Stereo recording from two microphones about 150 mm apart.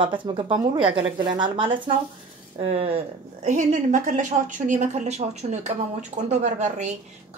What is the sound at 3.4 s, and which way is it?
A woman's voice, 55° right (ahead or behind).